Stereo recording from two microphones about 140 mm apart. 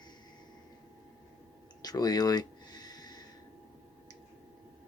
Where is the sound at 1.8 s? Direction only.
25° left (ahead or behind).